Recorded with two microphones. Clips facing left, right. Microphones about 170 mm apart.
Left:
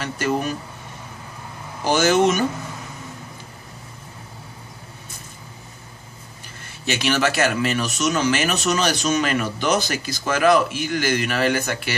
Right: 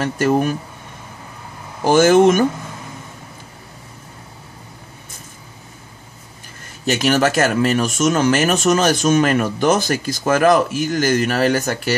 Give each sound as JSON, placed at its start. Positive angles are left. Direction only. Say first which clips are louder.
{"t": 0.0, "sound": "speech", "louder": "right 6 dB", "side_deg": -50}
{"t": 1.9, "sound": "speech", "louder": "right 6 dB", "side_deg": -50}
{"t": 6.9, "sound": "speech", "louder": "right 5 dB", "side_deg": -45}